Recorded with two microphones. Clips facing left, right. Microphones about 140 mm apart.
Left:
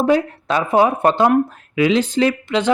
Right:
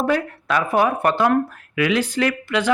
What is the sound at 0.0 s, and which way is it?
Speech, 20° left (ahead or behind).